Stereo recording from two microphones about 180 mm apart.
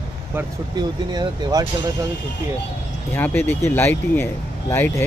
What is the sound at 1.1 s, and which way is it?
Speech, 20° right (ahead or behind).